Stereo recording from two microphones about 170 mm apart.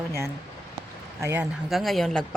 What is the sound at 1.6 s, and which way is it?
Speech, centre (ahead or behind).